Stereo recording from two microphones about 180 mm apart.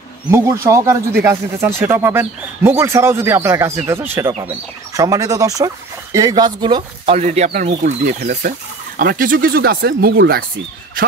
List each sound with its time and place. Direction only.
0.3 s speech: 15° right (ahead or behind)
7.2 s speech: 40° right (ahead or behind)
8.4 s speech: 55° right (ahead or behind)
11.0 s a sound: 50° right (ahead or behind)